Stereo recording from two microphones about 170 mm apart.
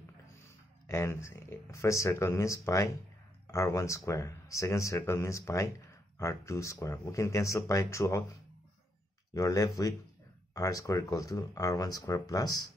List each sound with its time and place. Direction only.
0.8 s speech: 15° left (ahead or behind)